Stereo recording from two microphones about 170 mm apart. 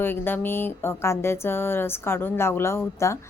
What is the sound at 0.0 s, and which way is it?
A woman's voice, 10° left (ahead or behind).